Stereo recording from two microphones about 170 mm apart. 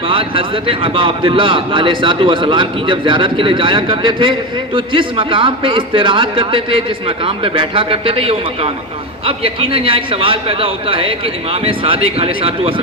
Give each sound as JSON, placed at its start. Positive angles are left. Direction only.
{"t": 0.1, "sound": "a man's voice", "side_deg": -30}